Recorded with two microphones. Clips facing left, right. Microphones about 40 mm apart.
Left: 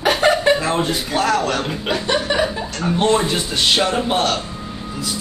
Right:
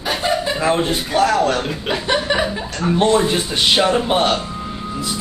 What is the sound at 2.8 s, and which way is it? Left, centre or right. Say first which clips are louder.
Speech: right 2 dB; centre.